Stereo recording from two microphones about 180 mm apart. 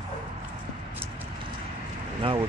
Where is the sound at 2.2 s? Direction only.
30° right (ahead or behind).